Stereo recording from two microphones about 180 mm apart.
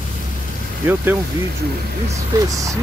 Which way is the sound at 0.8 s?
10° right (ahead or behind).